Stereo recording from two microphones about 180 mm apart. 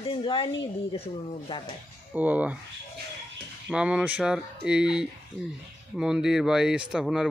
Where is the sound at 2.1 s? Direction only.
10° right (ahead or behind).